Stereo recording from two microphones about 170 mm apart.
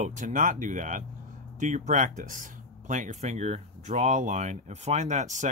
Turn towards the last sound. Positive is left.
turn(degrees=-45)  # may be behind; listen again after turning